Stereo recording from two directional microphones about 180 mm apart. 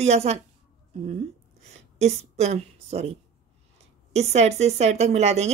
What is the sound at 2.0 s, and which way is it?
A woman's voice, 35° right (ahead or behind).